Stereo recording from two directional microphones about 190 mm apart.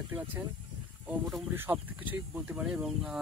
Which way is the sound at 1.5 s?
10° right (ahead or behind).